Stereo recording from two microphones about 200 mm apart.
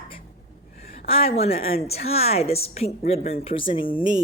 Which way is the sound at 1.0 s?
30° left (ahead or behind).